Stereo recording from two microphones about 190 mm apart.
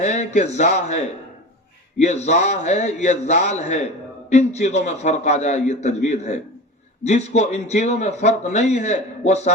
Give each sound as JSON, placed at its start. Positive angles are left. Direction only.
{"t": 0.0, "sound": "a man's voice", "side_deg": 40}